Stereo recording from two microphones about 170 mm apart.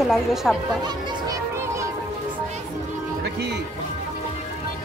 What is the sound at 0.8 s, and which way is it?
Music, 20° right (ahead or behind).